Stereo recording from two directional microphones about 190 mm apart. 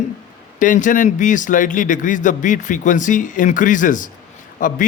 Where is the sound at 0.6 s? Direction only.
45° left (ahead or behind).